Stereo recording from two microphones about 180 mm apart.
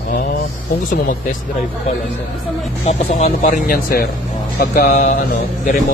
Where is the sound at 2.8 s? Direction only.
40° left (ahead or behind).